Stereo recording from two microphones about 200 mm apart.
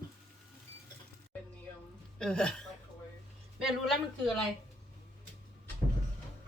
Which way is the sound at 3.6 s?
Centre (ahead or behind).